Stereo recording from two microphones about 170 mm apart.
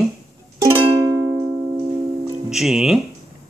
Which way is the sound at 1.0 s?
15° right (ahead or behind).